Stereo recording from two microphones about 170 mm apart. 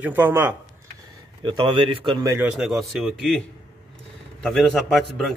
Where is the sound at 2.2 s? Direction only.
15° right (ahead or behind).